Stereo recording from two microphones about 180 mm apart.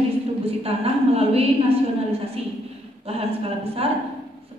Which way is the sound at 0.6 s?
35° right (ahead or behind).